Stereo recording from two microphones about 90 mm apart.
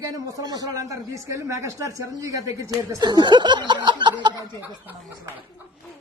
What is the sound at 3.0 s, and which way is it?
Speech, 55° right (ahead or behind).